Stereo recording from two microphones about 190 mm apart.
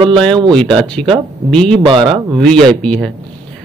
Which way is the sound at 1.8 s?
25° right (ahead or behind).